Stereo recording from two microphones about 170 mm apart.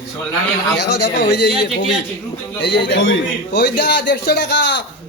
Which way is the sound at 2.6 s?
85° left.